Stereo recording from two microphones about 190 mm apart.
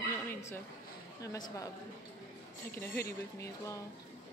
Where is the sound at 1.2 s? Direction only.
20° left (ahead or behind).